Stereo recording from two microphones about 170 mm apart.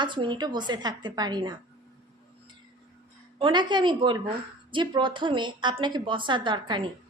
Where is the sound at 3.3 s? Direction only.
25° right (ahead or behind).